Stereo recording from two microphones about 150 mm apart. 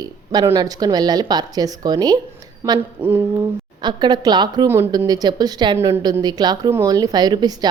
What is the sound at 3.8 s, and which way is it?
A woman's voice, 30° right (ahead or behind).